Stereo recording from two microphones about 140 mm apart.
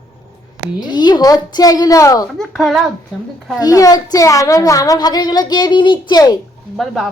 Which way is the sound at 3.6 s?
25° left (ahead or behind).